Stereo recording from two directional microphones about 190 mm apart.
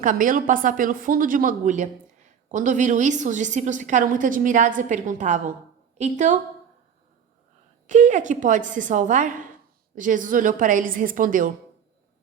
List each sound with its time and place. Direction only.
0.0 s a woman's voice: 45° right (ahead or behind)
7.9 s a woman's voice: 40° right (ahead or behind)